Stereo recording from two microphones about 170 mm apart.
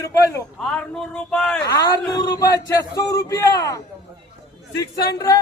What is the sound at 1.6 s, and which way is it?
A man's voice, 20° left (ahead or behind).